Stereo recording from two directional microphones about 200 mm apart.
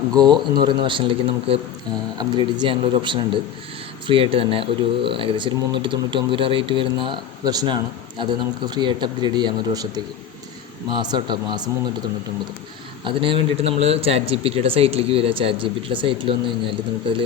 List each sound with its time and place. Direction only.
0.1 s speech: 20° right (ahead or behind)
13.1 s speech: 25° right (ahead or behind)